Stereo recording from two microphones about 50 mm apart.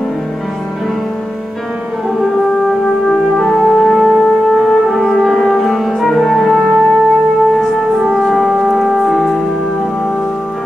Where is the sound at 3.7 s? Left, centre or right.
Centre.